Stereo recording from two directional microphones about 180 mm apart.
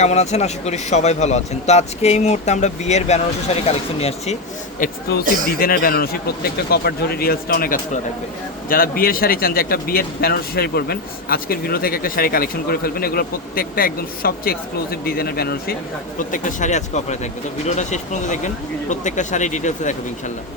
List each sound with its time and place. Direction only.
0.0 s speech: 40° left (ahead or behind)
4.8 s speech: 50° left (ahead or behind)
16.1 s speech: 45° left (ahead or behind)